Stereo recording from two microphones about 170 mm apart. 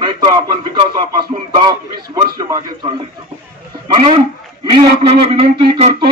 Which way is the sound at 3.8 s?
30° right (ahead or behind).